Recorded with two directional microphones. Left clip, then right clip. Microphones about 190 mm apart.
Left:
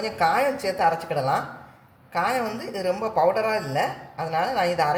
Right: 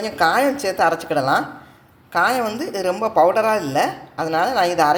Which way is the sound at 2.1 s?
40° right (ahead or behind).